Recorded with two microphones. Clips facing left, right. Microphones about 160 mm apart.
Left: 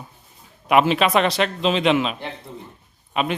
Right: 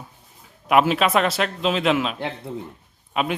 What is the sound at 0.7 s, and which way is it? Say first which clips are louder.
A man's voice: left 1 dB; 5° right (ahead or behind).